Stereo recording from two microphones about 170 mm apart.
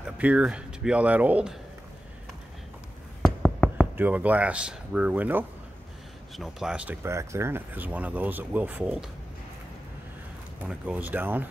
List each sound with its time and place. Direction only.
0.0 s speech: 10° right (ahead or behind)
3.2 s a sound: 5° left (ahead or behind)
3.9 s speech: 10° right (ahead or behind)
10.6 s speech: 10° right (ahead or behind)